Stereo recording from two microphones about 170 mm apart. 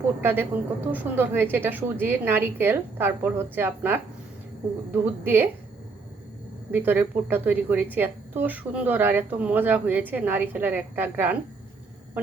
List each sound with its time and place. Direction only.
0.2 s a woman's voice: 10° right (ahead or behind)
6.7 s a woman's voice: 10° right (ahead or behind)